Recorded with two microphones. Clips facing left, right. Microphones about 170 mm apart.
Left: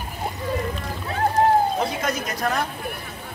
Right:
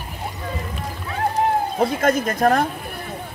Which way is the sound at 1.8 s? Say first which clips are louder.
Right 6 dB; 50° right (ahead or behind).